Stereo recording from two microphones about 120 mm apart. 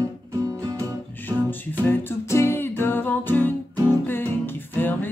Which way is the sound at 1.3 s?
15° left (ahead or behind).